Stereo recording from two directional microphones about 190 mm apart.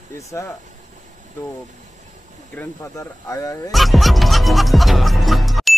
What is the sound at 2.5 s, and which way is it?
Speech, 10° left (ahead or behind).